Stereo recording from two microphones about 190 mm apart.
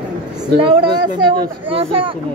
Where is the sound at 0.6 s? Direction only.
25° right (ahead or behind).